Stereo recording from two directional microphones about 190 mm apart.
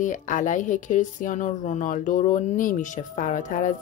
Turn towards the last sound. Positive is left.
turn(degrees=40)  # may be behind; listen again after turning